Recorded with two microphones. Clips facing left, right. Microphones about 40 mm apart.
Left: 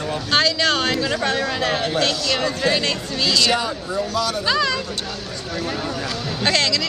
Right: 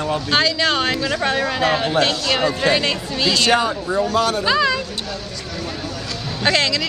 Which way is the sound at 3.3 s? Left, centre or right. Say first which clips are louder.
Right 3 dB; right.